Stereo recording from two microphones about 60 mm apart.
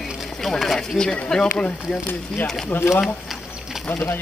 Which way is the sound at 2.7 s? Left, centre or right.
Left.